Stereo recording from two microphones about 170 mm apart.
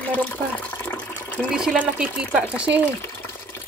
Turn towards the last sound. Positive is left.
turn(degrees=15)  # may be behind; listen again after turning